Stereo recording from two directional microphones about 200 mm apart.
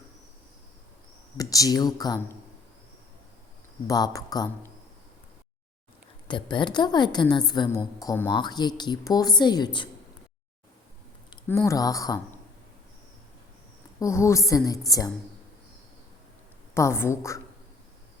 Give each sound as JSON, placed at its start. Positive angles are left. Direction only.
{"t": 1.4, "sound": "speech", "side_deg": 20}
{"t": 3.8, "sound": "a woman's voice", "side_deg": 20}
{"t": 6.2, "sound": "a woman's voice", "side_deg": 25}
{"t": 11.4, "sound": "speech", "side_deg": 15}
{"t": 14.0, "sound": "speech", "side_deg": 15}
{"t": 16.7, "sound": "speech", "side_deg": 15}